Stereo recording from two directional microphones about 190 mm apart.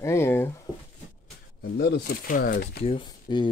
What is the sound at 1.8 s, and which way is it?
Speech, 55° left (ahead or behind).